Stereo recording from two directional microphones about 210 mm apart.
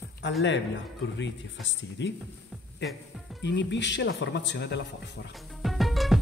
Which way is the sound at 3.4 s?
55° left (ahead or behind).